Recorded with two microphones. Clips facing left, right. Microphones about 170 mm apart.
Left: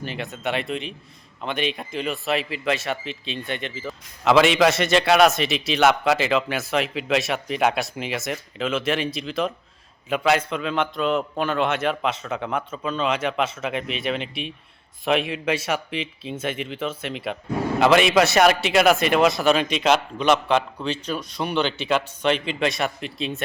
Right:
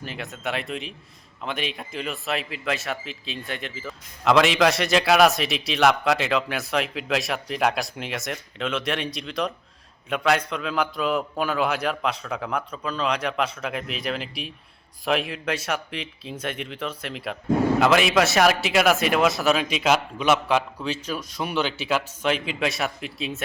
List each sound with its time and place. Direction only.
0.0 s speech: centre (ahead or behind)